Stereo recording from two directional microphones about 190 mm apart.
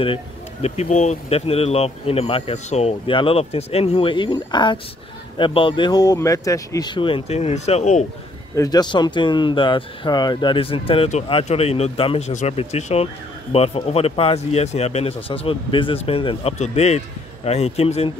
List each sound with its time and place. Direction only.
0.0 s speech: 30° left (ahead or behind)
8.5 s speech: 20° left (ahead or behind)